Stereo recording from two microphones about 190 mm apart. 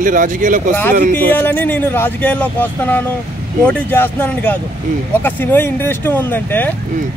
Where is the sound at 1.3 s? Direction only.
10° left (ahead or behind).